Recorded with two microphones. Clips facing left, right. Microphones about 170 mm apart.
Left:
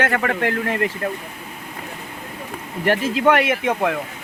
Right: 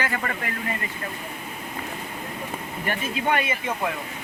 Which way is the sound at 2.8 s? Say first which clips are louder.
Left 10 dB; 75° left (ahead or behind).